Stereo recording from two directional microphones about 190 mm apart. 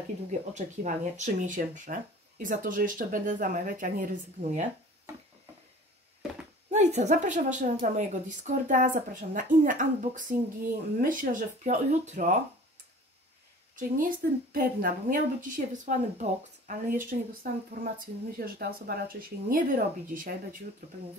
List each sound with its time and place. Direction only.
0.3 s a woman's voice: 40° right (ahead or behind)
6.7 s a woman's voice: 35° right (ahead or behind)
13.7 s a woman's voice: 45° right (ahead or behind)